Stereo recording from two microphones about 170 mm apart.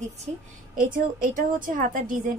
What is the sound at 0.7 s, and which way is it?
A woman's voice, 50° right (ahead or behind).